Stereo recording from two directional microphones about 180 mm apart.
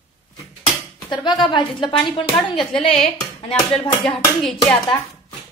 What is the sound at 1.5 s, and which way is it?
A woman's voice, 25° left (ahead or behind).